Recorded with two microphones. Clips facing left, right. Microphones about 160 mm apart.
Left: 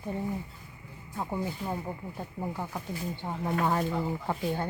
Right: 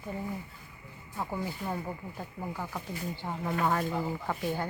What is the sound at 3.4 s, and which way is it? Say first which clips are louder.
Speech: left 1 dB; 20° left (ahead or behind).